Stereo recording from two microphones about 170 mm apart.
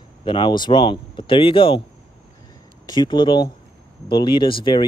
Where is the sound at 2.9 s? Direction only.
25° left (ahead or behind).